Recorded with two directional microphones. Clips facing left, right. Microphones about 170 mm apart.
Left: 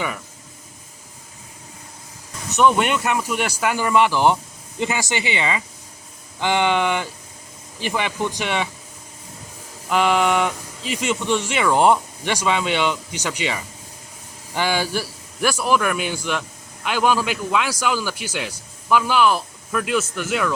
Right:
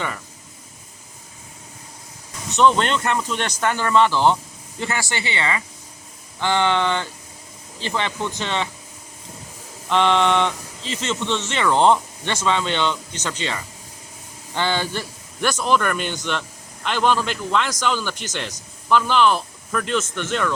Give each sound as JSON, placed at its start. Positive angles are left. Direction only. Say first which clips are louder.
{"t": 2.6, "sound": "a man's voice", "louder": "even", "side_deg": 10}
{"t": 9.9, "sound": "a man's voice", "louder": "even", "side_deg": 5}